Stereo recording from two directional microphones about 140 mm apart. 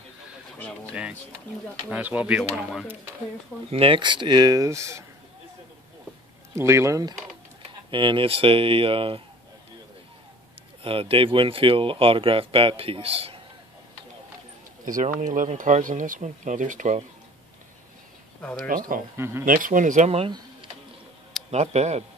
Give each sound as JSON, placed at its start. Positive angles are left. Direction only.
{"t": 1.9, "sound": "speech", "side_deg": -10}
{"t": 3.7, "sound": "speech", "side_deg": -40}
{"t": 6.5, "sound": "speech", "side_deg": -20}
{"t": 7.9, "sound": "speech", "side_deg": -35}
{"t": 10.8, "sound": "speech", "side_deg": -40}
{"t": 14.9, "sound": "speech", "side_deg": -70}
{"t": 19.1, "sound": "speech", "side_deg": -20}
{"t": 19.4, "sound": "speech", "side_deg": -75}
{"t": 20.1, "sound": "speech", "side_deg": -45}
{"t": 21.5, "sound": "speech", "side_deg": -50}